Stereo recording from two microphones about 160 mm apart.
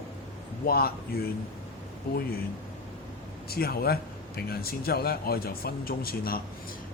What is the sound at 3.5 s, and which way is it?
Speech, 70° left (ahead or behind).